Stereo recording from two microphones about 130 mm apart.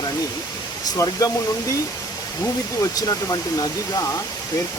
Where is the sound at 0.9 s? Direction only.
30° left (ahead or behind).